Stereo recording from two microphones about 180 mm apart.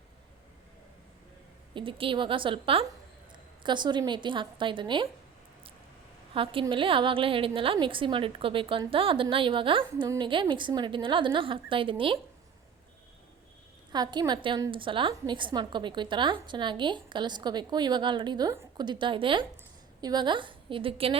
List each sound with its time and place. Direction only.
1.7 s a woman's voice: 30° right (ahead or behind)
6.3 s a woman's voice: 30° right (ahead or behind)
13.9 s a woman's voice: 25° right (ahead or behind)
18.9 s a woman's voice: 25° right (ahead or behind)